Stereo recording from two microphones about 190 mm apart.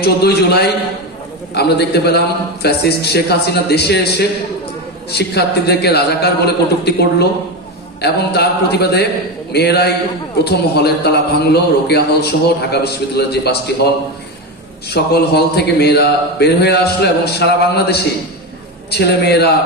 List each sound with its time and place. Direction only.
0.0 s a man's voice: 60° left (ahead or behind)